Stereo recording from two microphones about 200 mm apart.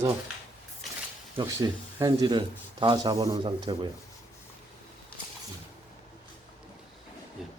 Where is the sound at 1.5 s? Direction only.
20° right (ahead or behind).